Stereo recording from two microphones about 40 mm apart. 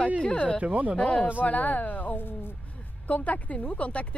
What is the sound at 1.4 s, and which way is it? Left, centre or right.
Speech, left.